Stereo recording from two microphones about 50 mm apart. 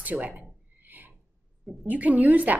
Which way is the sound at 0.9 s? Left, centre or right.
Right.